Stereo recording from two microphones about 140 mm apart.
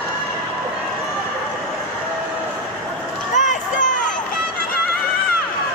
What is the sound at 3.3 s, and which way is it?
Run, 60° left (ahead or behind).